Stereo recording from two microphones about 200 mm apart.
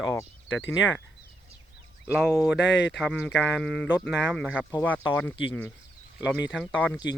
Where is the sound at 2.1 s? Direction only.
5° right (ahead or behind).